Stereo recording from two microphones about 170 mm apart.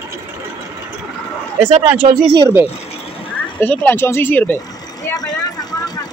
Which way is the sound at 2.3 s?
20° right (ahead or behind).